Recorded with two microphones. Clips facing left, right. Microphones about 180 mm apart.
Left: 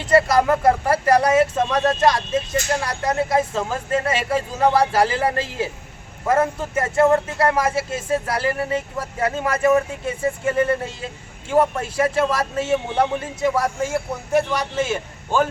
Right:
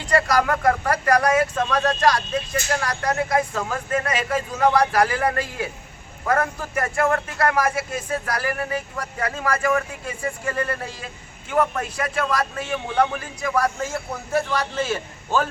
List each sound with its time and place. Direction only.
0.1 s speech: 25° left (ahead or behind)